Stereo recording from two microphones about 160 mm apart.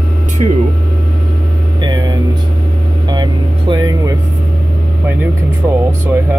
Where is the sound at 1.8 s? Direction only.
25° right (ahead or behind).